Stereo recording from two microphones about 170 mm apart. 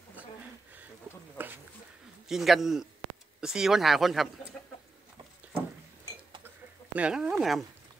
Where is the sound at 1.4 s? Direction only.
10° right (ahead or behind).